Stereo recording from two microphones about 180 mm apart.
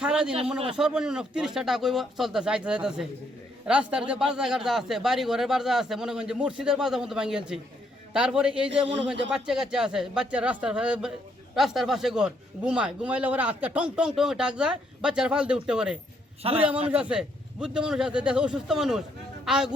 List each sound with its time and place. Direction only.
0.0 s a man's voice: 5° right (ahead or behind)
16.4 s a man's voice: 35° right (ahead or behind)
16.9 s a man's voice: 5° right (ahead or behind)